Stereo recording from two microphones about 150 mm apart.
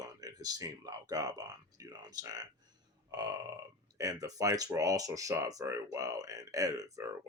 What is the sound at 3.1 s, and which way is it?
Burping, 25° right (ahead or behind).